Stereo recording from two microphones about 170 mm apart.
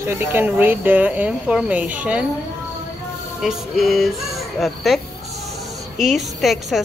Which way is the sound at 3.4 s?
Centre (ahead or behind).